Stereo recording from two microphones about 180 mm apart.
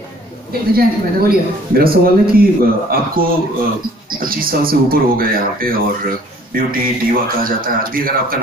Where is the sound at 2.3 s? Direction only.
55° right (ahead or behind).